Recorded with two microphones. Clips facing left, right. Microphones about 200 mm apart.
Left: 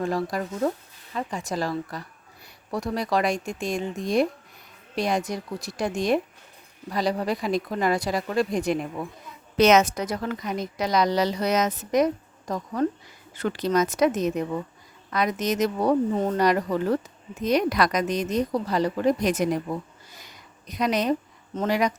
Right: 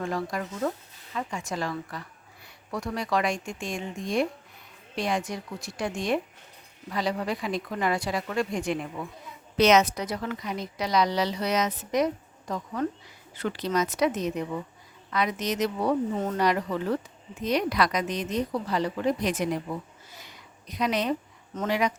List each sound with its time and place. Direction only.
0.0 s a woman's voice: 35° left (ahead or behind)
9.6 s a woman's voice: 50° left (ahead or behind)
20.2 s a sound: 45° left (ahead or behind)
21.5 s a woman's voice: 35° left (ahead or behind)